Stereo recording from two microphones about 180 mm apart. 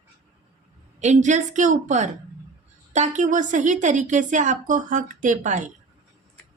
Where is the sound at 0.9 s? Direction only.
40° right (ahead or behind).